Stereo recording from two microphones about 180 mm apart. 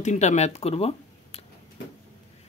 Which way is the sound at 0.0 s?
40° left (ahead or behind).